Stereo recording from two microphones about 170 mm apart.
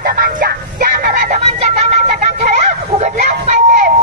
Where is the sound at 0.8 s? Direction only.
55° right (ahead or behind).